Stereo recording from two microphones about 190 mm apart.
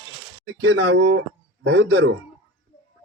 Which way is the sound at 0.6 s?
90° right.